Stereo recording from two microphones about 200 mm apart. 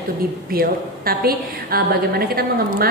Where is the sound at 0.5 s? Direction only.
50° right (ahead or behind).